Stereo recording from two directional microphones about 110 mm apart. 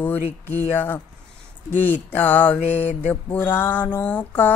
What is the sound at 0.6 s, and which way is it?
Speech, 20° left (ahead or behind).